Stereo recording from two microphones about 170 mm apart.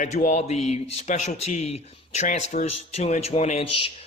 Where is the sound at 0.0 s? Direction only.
45° left (ahead or behind).